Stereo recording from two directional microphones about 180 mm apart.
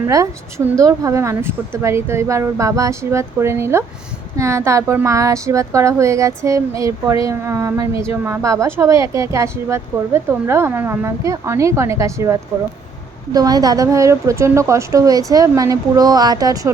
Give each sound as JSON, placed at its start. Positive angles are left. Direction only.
{"t": 0.0, "sound": "a woman's voice", "side_deg": -15}